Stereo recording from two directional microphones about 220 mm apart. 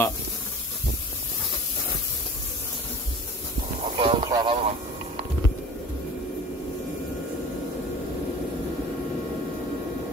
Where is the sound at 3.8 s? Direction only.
25° right (ahead or behind).